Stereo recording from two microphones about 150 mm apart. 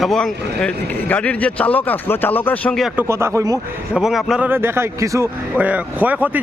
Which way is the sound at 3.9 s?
Centre (ahead or behind).